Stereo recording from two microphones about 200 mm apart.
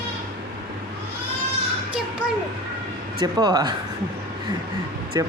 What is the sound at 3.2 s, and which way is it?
Speech, 20° right (ahead or behind).